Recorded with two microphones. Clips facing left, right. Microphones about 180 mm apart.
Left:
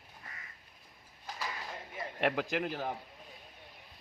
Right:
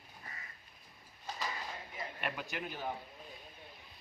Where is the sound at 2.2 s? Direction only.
80° left.